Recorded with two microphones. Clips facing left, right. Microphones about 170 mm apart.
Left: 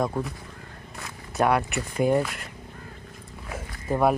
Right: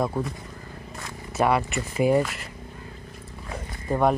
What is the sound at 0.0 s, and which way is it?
Speech, centre (ahead or behind).